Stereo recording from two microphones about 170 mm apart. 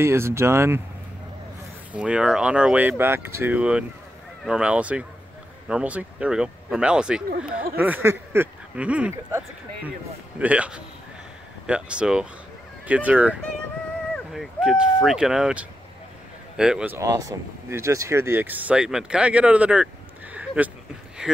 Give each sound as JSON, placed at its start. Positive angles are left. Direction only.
{"t": 0.0, "sound": "speech", "side_deg": -15}
{"t": 1.9, "sound": "speech", "side_deg": -5}
{"t": 10.4, "sound": "speech", "side_deg": -10}
{"t": 20.3, "sound": "a sound", "side_deg": -10}
{"t": 21.2, "sound": "speech", "side_deg": -5}